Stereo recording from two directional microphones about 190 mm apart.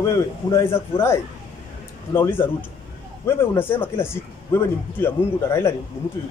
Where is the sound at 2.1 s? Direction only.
10° left (ahead or behind).